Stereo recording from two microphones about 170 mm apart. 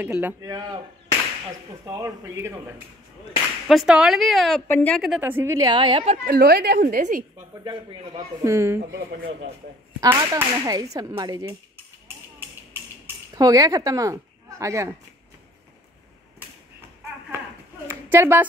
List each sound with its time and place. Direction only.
0.0 s speech: 10° right (ahead or behind)
0.4 s speech: 25° right (ahead or behind)
1.9 s speech: 20° right (ahead or behind)
3.6 s a woman's voice: centre (ahead or behind)
5.2 s speech: 15° right (ahead or behind)
6.2 s a woman's voice: 65° right (ahead or behind)
7.0 s a woman's voice: 50° right (ahead or behind)
8.5 s speech: 15° right (ahead or behind)
10.0 s speech: 20° right (ahead or behind)
13.0 s speech: 20° right (ahead or behind)
17.8 s a sound: 15° right (ahead or behind)